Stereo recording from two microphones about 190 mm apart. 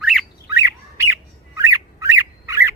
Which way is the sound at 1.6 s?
15° right (ahead or behind).